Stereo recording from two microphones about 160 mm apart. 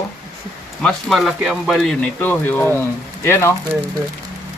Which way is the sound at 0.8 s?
5° left (ahead or behind).